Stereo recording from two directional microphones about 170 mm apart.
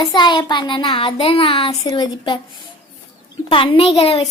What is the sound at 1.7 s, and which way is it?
Speech, 20° left (ahead or behind).